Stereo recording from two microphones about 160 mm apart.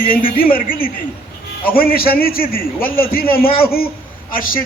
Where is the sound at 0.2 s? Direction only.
65° left (ahead or behind).